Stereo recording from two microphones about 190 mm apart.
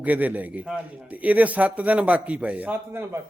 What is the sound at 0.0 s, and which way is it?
A man's voice, 10° right (ahead or behind).